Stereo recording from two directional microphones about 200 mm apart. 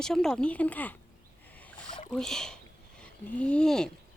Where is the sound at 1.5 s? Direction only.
10° left (ahead or behind).